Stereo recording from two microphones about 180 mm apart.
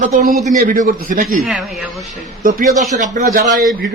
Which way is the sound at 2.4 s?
50° right (ahead or behind).